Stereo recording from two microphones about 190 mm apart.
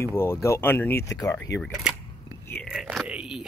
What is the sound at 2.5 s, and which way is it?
Speech, centre (ahead or behind).